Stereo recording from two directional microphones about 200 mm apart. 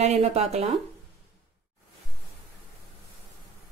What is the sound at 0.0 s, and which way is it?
Speech, 30° right (ahead or behind).